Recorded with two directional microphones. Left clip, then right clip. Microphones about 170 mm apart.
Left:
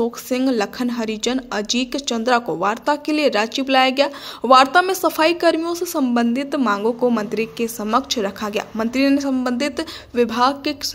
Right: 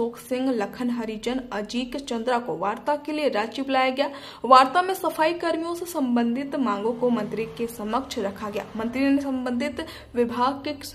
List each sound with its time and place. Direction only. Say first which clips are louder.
0.0 s a woman's voice: left 6 dB; 35° left (ahead or behind)